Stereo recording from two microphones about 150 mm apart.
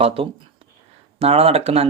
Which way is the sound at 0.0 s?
40° right (ahead or behind).